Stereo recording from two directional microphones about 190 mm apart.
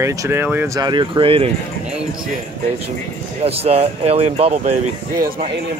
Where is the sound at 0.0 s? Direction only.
15° right (ahead or behind).